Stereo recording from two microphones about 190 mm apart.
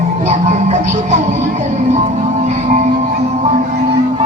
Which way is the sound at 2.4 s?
35° right (ahead or behind).